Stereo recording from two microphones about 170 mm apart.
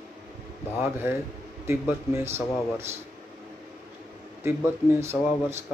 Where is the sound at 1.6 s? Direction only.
15° right (ahead or behind).